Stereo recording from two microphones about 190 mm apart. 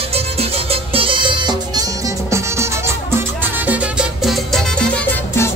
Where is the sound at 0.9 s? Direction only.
25° right (ahead or behind).